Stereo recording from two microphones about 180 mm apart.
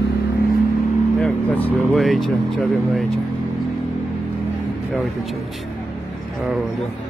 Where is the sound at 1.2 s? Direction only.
5° left (ahead or behind).